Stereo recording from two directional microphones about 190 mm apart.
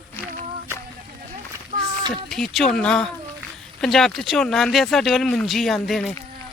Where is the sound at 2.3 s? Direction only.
Centre (ahead or behind).